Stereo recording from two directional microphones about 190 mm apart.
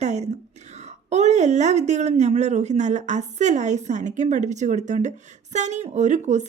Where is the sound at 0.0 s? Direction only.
35° right (ahead or behind).